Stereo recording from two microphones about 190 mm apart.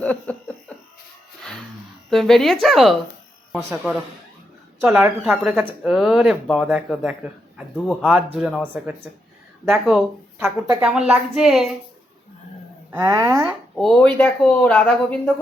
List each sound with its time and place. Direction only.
0.0 s a sound: 5° left (ahead or behind)
2.0 s a man's voice: centre (ahead or behind)
4.8 s speech: 15° right (ahead or behind)
5.2 s a man's voice: centre (ahead or behind)
12.9 s speech: 15° right (ahead or behind)
13.7 s speech: centre (ahead or behind)